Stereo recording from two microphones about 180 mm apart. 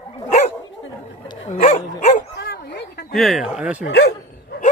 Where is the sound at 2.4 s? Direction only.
65° left (ahead or behind).